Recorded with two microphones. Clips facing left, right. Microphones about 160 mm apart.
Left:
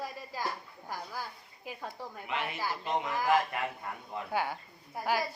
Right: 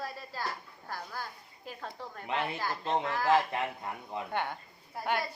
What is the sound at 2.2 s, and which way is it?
Speech, 35° right (ahead or behind).